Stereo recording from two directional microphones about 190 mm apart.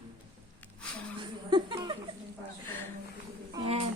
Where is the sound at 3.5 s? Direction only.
30° right (ahead or behind).